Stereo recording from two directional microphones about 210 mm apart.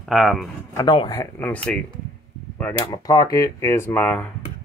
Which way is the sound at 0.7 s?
20° left (ahead or behind).